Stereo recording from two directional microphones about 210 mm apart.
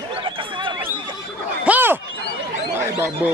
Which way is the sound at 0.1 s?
25° right (ahead or behind).